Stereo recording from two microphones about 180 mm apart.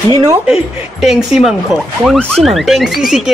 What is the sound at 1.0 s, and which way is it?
Speech, centre (ahead or behind).